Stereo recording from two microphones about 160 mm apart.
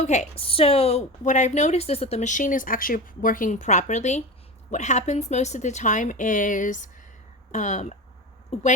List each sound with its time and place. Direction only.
0.0 s a woman's voice: 45° left (ahead or behind)